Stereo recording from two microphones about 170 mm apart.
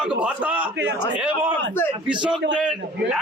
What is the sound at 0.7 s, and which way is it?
Speech, 90° right.